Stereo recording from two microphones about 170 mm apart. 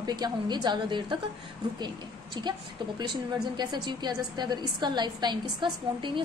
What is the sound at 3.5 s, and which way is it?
A woman's voice, 25° right (ahead or behind).